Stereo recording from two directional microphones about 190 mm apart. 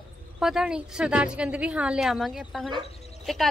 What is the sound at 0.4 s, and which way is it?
Speech, 5° right (ahead or behind).